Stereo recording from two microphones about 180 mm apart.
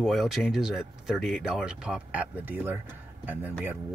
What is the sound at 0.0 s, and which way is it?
Speech, centre (ahead or behind).